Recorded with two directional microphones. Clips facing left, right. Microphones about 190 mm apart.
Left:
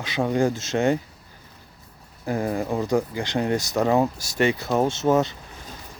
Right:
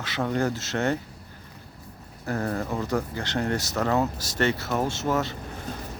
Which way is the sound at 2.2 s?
15° left (ahead or behind).